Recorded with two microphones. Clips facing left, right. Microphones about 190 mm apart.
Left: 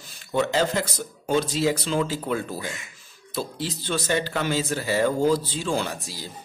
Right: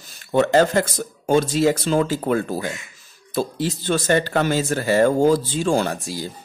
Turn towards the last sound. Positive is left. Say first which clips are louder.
# right 6 dB
turn(degrees=-50)  # may be behind; listen again after turning